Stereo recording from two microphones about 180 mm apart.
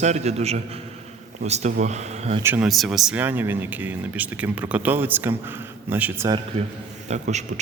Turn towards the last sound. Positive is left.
turn(degrees=-40)  # may be behind; listen again after turning